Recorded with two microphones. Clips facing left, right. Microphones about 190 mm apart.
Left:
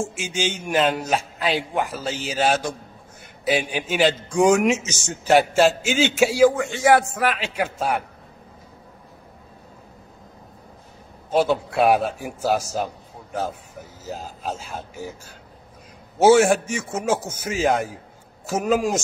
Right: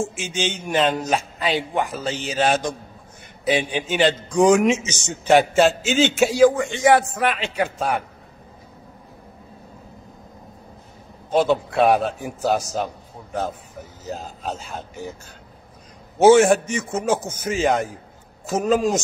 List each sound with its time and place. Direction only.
0.0 s a man's voice: 10° left (ahead or behind)
11.2 s a man's voice: 5° left (ahead or behind)